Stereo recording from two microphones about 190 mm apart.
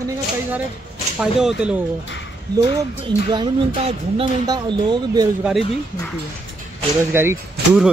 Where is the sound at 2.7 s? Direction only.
25° right (ahead or behind).